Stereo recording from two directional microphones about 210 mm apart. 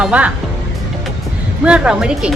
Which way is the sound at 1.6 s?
5° right (ahead or behind).